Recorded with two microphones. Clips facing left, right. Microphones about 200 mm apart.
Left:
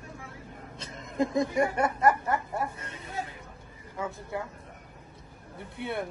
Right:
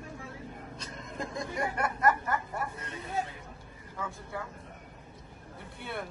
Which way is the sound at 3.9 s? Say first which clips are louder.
Left 5 dB; 25° left (ahead or behind).